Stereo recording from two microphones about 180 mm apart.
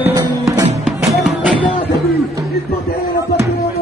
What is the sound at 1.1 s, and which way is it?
Music, centre (ahead or behind).